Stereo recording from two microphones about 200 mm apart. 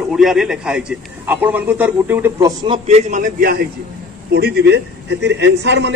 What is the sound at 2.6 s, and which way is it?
A man's voice, 30° right (ahead or behind).